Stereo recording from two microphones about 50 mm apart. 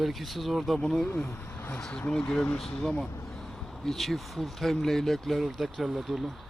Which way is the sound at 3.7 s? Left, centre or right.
Centre.